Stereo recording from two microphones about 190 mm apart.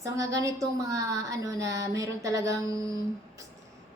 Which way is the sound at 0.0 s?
15° right (ahead or behind).